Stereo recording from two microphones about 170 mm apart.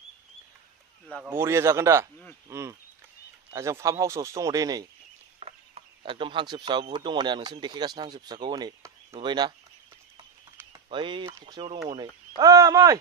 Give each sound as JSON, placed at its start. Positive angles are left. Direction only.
{"t": 1.2, "sound": "speech", "side_deg": -15}
{"t": 5.4, "sound": "speech", "side_deg": -35}
{"t": 10.7, "sound": "speech", "side_deg": -30}